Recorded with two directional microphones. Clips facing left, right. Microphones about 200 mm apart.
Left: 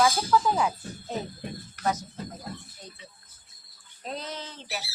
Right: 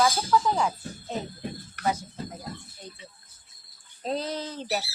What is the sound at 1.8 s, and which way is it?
Speech, 65° right (ahead or behind).